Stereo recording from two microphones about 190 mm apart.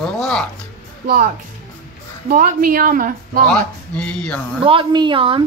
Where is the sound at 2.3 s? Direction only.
50° right (ahead or behind).